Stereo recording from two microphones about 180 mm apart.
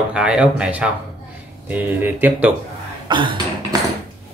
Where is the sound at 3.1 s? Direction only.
25° right (ahead or behind).